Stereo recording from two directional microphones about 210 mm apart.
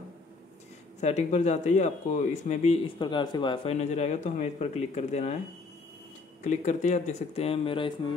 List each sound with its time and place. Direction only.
1.0 s speech: 35° left (ahead or behind)
6.4 s speech: 35° left (ahead or behind)